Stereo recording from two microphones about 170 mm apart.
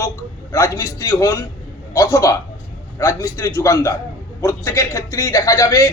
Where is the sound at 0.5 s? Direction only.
15° left (ahead or behind).